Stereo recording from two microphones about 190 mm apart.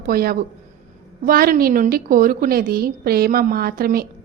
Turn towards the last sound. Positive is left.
turn(degrees=-50)  # may be behind; listen again after turning